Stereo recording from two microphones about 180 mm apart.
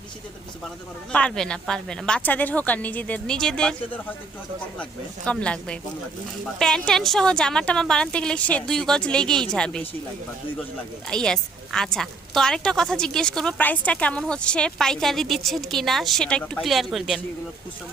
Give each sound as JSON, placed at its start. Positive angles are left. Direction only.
{"t": 1.1, "sound": "a woman's voice", "side_deg": 5}
{"t": 11.1, "sound": "a woman's voice", "side_deg": 5}